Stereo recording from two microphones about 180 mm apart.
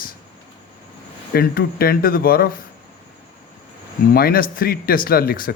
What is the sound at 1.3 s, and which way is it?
Speech, 55° left (ahead or behind).